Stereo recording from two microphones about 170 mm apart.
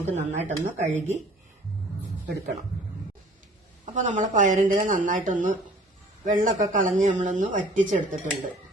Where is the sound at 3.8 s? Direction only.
45° right (ahead or behind).